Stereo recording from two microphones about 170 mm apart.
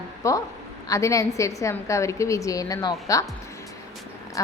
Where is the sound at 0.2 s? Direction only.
20° left (ahead or behind).